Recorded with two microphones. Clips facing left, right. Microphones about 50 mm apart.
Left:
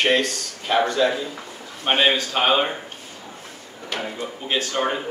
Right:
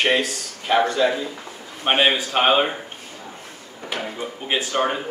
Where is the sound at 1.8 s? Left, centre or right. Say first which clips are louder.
Right 1 dB; centre.